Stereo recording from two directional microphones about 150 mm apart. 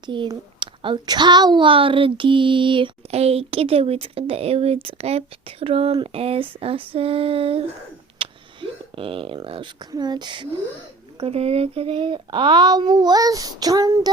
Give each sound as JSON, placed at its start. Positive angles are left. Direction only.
{"t": 0.0, "sound": "a woman's voice", "side_deg": -30}
{"t": 8.2, "sound": "a sound", "side_deg": -35}
{"t": 9.9, "sound": "speech", "side_deg": -30}
{"t": 11.2, "sound": "speech", "side_deg": -45}